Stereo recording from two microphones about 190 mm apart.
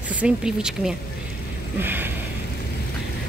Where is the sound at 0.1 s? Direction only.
5° right (ahead or behind).